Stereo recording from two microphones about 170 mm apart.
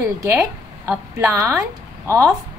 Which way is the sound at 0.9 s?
15° right (ahead or behind).